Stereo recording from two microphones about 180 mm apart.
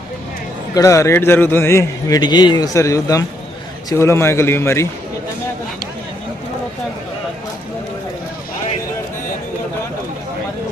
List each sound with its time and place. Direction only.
0.7 s a man's voice: 15° left (ahead or behind)